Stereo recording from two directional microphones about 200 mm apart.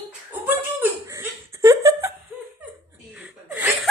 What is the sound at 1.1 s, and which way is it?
Laughter, 15° right (ahead or behind).